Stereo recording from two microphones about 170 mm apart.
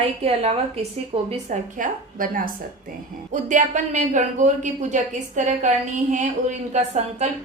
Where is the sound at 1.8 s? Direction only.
55° right (ahead or behind).